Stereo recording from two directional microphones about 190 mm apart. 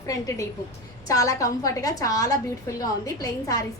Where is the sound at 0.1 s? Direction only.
15° left (ahead or behind).